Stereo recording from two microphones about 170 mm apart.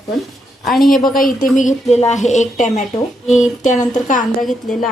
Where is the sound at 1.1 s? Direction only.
55° left (ahead or behind).